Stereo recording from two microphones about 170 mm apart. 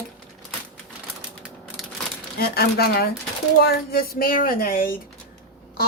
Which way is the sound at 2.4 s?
65° left (ahead or behind).